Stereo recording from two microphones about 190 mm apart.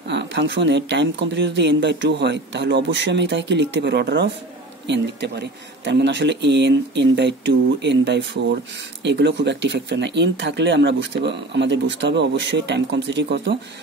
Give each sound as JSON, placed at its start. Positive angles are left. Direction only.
{"t": 0.1, "sound": "speech", "side_deg": -70}